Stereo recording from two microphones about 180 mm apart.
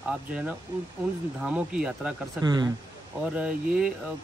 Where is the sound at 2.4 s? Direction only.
20° right (ahead or behind).